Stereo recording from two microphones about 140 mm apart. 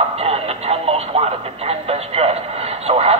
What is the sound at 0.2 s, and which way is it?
Music, 45° right (ahead or behind).